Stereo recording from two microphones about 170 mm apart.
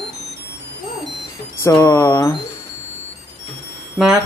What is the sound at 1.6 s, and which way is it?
Speech, 15° left (ahead or behind).